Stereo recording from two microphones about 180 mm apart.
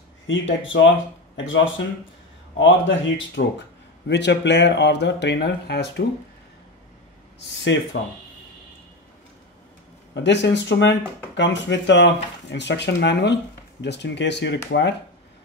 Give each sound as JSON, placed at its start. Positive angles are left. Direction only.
{"t": 0.3, "sound": "speech", "side_deg": 90}
{"t": 2.6, "sound": "speech", "side_deg": 90}
{"t": 4.1, "sound": "speech", "side_deg": 75}
{"t": 7.7, "sound": "speech", "side_deg": 85}
{"t": 10.1, "sound": "speech", "side_deg": 75}